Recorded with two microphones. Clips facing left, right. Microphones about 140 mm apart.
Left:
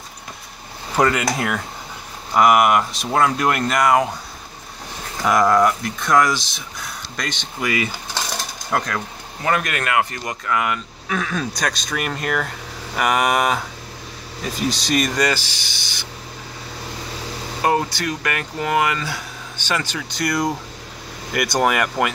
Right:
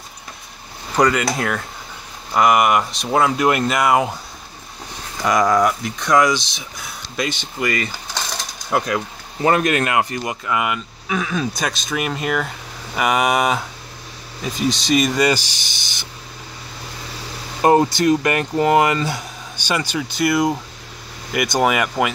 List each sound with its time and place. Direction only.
0.9 s speech: 5° left (ahead or behind)
5.2 s speech: centre (ahead or behind)
8.7 s speech: 10° right (ahead or behind)
9.4 s speech: 25° right (ahead or behind)
10.2 s speech: 10° right (ahead or behind)
15.3 s speech: 15° right (ahead or behind)
17.6 s speech: 25° right (ahead or behind); by 22.1 s 5° right (ahead or behind)